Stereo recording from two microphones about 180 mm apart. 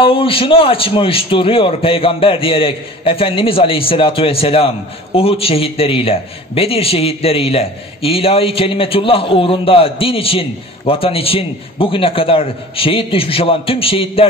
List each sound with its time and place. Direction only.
0.0 s a man's voice: 30° left (ahead or behind)